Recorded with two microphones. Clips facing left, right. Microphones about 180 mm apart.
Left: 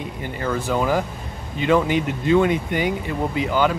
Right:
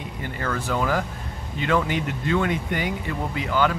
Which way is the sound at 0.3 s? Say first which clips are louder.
Left 4 dB; 15° left (ahead or behind).